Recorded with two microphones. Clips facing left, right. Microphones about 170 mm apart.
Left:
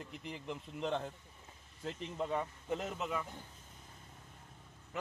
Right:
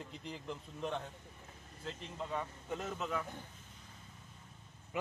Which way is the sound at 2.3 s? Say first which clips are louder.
Even; 20° left (ahead or behind).